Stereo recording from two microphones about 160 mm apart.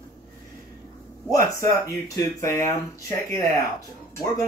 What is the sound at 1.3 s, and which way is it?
Speech, 20° left (ahead or behind).